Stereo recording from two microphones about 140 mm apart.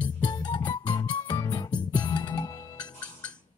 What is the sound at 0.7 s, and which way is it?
Music, 30° left (ahead or behind).